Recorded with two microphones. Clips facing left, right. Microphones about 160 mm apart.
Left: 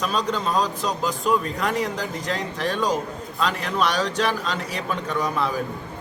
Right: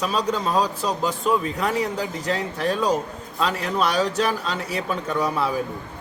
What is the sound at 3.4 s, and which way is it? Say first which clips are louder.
Speech: right 1 dB; 35° right (ahead or behind).